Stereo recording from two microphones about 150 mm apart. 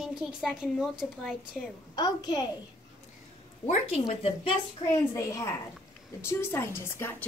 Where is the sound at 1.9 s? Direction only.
25° left (ahead or behind).